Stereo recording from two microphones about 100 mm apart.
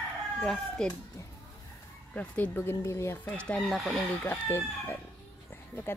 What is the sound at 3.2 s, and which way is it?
Speech, 10° left (ahead or behind).